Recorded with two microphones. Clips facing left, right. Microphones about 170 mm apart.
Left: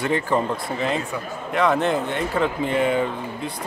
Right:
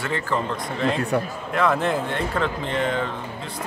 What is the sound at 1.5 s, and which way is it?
Speech, centre (ahead or behind).